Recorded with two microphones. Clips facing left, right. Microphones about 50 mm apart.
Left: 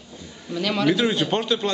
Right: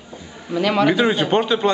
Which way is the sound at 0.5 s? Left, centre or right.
Centre.